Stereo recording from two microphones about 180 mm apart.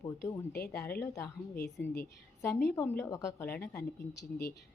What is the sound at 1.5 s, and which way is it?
Speech, 65° left (ahead or behind).